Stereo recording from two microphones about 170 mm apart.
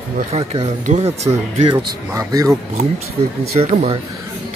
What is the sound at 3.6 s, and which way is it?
Speech, 35° right (ahead or behind).